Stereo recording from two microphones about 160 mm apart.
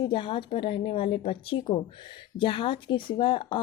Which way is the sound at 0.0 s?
30° left (ahead or behind).